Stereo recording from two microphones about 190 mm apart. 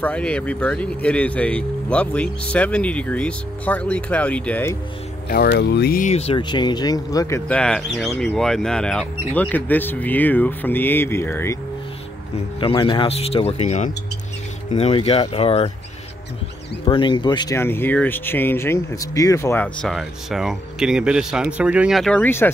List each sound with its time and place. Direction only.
0.0 s speech: 5° left (ahead or behind)
5.3 s speech: 55° left (ahead or behind); by 11.5 s 10° left (ahead or behind)
12.5 s speech: 25° left (ahead or behind)
16.8 s speech: 25° left (ahead or behind)